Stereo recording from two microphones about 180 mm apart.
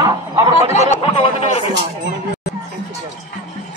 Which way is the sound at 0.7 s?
40° left (ahead or behind).